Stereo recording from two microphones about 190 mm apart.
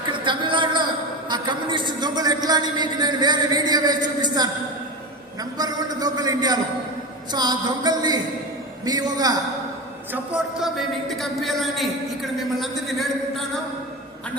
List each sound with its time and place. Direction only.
0.1 s a sound: 25° right (ahead or behind)
1.3 s a man's voice: 25° right (ahead or behind)
10.1 s speech: 5° right (ahead or behind)